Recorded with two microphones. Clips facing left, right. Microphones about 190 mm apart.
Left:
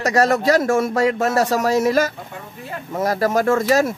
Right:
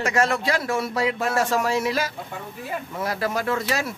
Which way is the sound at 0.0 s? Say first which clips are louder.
Left 6 dB; 40° left (ahead or behind).